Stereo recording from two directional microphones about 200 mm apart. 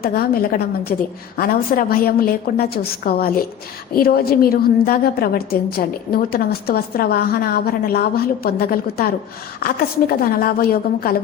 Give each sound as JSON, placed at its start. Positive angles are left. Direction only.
{"t": 0.0, "sound": "a woman's voice", "side_deg": 50}